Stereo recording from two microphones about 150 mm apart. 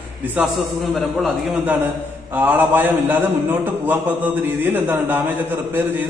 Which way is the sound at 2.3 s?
10° right (ahead or behind).